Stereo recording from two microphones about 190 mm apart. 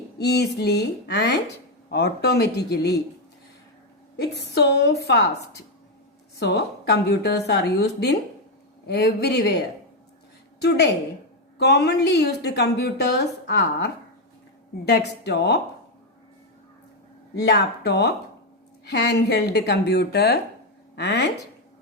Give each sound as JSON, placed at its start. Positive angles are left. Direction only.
{"t": 0.2, "sound": "a woman's voice", "side_deg": 60}
{"t": 4.2, "sound": "a woman's voice", "side_deg": 60}
{"t": 10.6, "sound": "a woman's voice", "side_deg": 60}
{"t": 17.4, "sound": "a woman's voice", "side_deg": 65}